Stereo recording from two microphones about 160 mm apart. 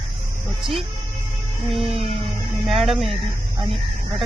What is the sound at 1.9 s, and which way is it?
Music, 40° right (ahead or behind).